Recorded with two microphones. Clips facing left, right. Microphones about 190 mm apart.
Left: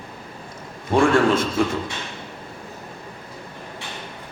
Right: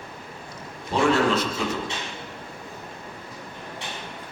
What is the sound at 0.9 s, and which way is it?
Speech, 50° left (ahead or behind).